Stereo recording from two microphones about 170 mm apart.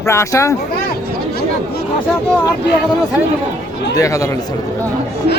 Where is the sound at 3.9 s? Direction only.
20° left (ahead or behind).